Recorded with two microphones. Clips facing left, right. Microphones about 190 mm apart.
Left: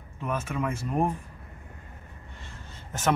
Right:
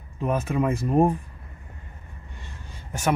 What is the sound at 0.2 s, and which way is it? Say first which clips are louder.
Speech: right 6 dB; 35° right (ahead or behind).